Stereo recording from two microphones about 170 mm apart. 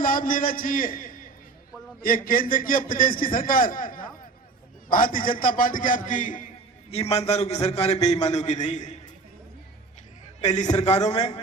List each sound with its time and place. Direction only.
0.0 s a man's voice: 55° left (ahead or behind)
6.9 s a man's voice: 40° left (ahead or behind)
10.4 s a man's voice: 40° left (ahead or behind)